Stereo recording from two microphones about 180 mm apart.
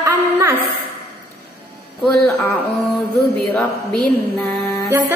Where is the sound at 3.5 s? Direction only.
5° left (ahead or behind).